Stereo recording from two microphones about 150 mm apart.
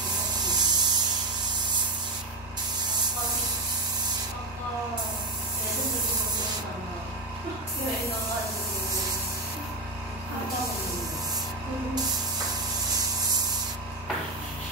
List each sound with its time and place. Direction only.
0.4 s spray: 30° right (ahead or behind)
12.9 s wood: 25° right (ahead or behind)